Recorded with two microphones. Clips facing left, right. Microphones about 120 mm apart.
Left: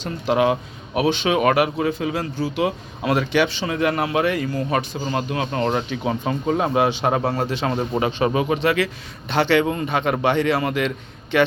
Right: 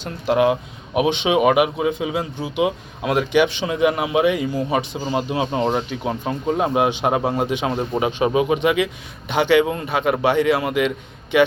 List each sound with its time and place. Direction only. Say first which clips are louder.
0.0 s speech: right 1 dB; 5° right (ahead or behind)
0.9 s a man's voice: right 2 dB; 15° right (ahead or behind)
2.6 s speech: even; 5° right (ahead or behind)